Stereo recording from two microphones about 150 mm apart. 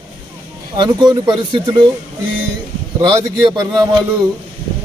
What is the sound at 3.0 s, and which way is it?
A man's voice, 30° right (ahead or behind).